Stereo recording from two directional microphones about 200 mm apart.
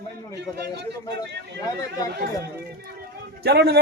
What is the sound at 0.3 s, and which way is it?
Speech, 55° right (ahead or behind).